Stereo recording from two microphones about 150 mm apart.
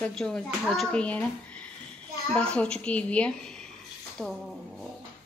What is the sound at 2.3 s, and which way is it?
Speech, 5° left (ahead or behind).